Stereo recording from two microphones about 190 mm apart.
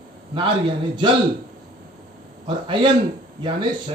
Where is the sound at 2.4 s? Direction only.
25° right (ahead or behind).